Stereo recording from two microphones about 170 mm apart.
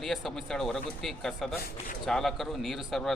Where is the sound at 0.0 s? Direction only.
Centre (ahead or behind).